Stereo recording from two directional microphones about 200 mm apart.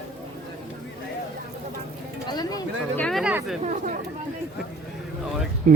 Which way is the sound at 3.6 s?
40° right (ahead or behind).